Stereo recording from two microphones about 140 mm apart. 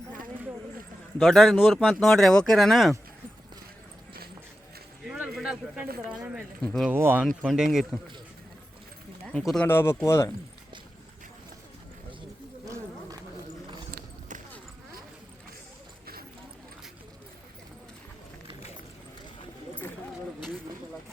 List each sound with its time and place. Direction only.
1.2 s speech: centre (ahead or behind)
5.0 s a sound: 10° right (ahead or behind)
6.6 s speech: 5° left (ahead or behind)
6.9 s speech: 15° right (ahead or behind)
7.4 s speech: 5° right (ahead or behind)
9.2 s speech: centre (ahead or behind)
9.6 s speech: 15° left (ahead or behind)
13.9 s clip-clop: 65° right (ahead or behind)